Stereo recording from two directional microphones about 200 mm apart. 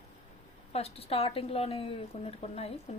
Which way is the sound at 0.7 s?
30° left (ahead or behind).